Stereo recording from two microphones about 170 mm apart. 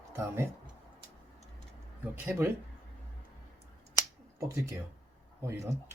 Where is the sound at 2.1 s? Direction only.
10° right (ahead or behind).